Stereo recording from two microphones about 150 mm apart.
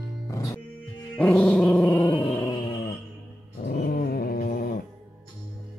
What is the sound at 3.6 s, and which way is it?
Dog, 90° left.